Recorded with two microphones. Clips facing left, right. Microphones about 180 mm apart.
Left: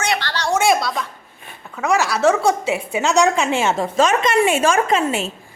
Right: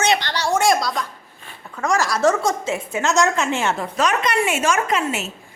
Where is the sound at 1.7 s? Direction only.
5° left (ahead or behind).